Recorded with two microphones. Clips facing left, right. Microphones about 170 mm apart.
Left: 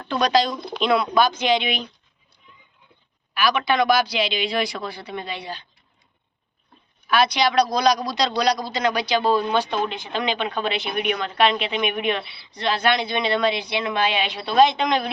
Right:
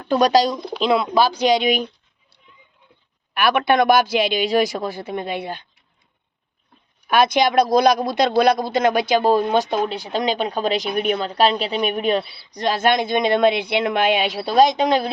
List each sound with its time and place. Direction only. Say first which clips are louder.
0.1 s speech: right 4 dB; 40° right (ahead or behind)
0.8 s speech: right 2 dB; 25° right (ahead or behind)
3.3 s a woman's voice: right 4 dB; 60° right (ahead or behind)
7.1 s a woman's voice: right 3 dB; 50° right (ahead or behind)